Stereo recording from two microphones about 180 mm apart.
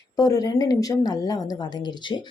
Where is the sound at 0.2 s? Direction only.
20° left (ahead or behind).